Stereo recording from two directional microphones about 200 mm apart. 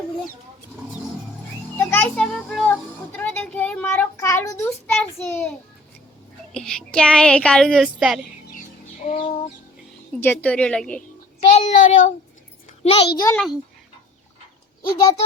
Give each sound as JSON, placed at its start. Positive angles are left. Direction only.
{"t": 1.8, "sound": "music", "side_deg": 10}
{"t": 6.5, "sound": "speech", "side_deg": 5}
{"t": 9.0, "sound": "bird", "side_deg": 35}
{"t": 10.2, "sound": "speech", "side_deg": 5}
{"t": 11.3, "sound": "a child's voice", "side_deg": 35}
{"t": 13.3, "sound": "speech", "side_deg": 0}
{"t": 14.8, "sound": "speech", "side_deg": 20}